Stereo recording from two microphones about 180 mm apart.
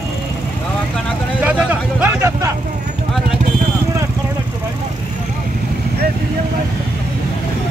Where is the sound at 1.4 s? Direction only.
10° right (ahead or behind).